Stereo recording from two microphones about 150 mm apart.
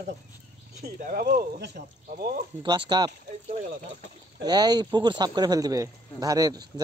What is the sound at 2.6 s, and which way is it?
Speech, 30° right (ahead or behind).